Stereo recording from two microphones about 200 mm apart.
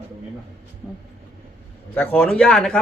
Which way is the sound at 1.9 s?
10° left (ahead or behind).